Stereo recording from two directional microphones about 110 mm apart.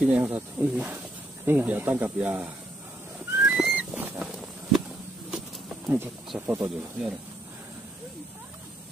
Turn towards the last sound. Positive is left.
turn(degrees=-10)  # may be behind; listen again after turning